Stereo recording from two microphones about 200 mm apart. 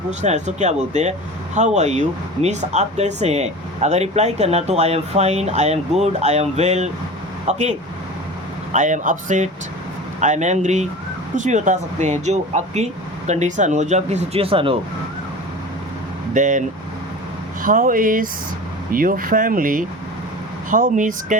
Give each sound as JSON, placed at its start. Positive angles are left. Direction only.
{"t": 0.1, "sound": "speech", "side_deg": -35}
{"t": 16.3, "sound": "speech", "side_deg": -40}